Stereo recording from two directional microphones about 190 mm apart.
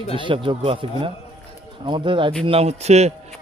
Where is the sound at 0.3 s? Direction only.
30° right (ahead or behind).